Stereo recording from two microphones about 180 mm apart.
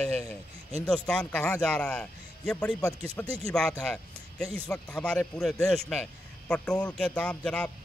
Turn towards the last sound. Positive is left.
turn(degrees=5)  # may be behind; listen again after turning